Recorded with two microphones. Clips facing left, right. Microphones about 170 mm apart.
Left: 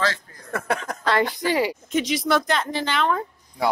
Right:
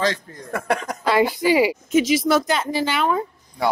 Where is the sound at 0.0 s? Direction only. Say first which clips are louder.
Right 3 dB; 15° right (ahead or behind).